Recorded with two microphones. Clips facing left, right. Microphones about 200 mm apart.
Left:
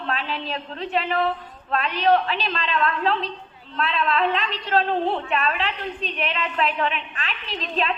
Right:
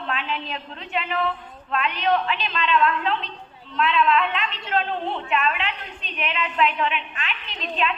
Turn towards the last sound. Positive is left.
turn(degrees=35)  # may be behind; listen again after turning